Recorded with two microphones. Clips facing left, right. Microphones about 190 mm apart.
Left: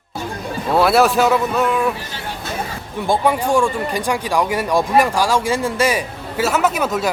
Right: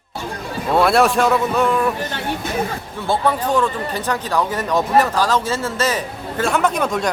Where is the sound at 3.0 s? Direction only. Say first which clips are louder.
Left 2 dB; 15° left (ahead or behind).